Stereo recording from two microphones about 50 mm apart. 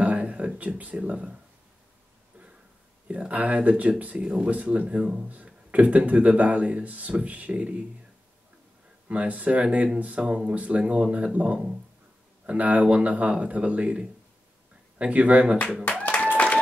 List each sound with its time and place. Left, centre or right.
0.0 s a sound: right
0.6 s speech: right
3.1 s speech: right
9.1 s speech: right
12.4 s speech: right
15.0 s speech: right
15.8 s music: left